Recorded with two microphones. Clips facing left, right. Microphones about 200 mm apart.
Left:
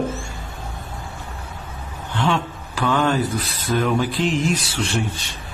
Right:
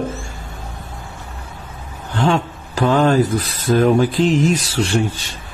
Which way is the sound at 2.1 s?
45° right (ahead or behind).